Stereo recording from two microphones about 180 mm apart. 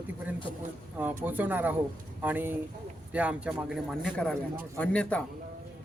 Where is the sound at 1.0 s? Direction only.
10° right (ahead or behind); by 5.3 s 5° left (ahead or behind).